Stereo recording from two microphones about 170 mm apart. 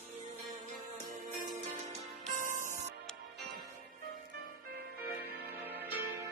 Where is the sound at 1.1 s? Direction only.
50° right (ahead or behind).